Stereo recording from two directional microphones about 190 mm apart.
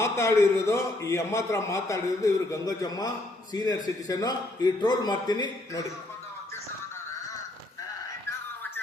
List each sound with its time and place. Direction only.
0.0 s a man's voice: 15° left (ahead or behind)